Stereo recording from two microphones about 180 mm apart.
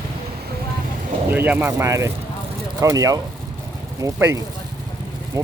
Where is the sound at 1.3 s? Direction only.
10° right (ahead or behind).